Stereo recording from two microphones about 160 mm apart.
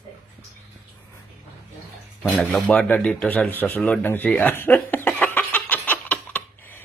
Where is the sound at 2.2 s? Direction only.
5° left (ahead or behind).